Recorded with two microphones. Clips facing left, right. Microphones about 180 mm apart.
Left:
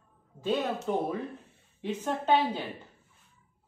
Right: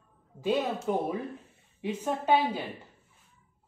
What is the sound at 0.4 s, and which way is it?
A woman's voice, 10° right (ahead or behind).